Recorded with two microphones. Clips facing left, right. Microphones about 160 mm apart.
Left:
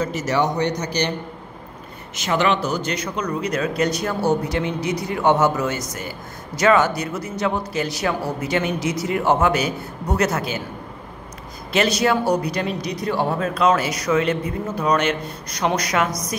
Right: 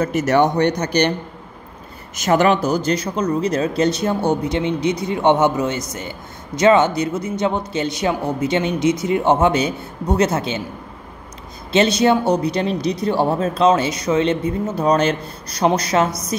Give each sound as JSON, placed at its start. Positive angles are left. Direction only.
{"t": 0.0, "sound": "a man's voice", "side_deg": -55}
{"t": 2.1, "sound": "speech", "side_deg": -45}
{"t": 11.7, "sound": "speech", "side_deg": -25}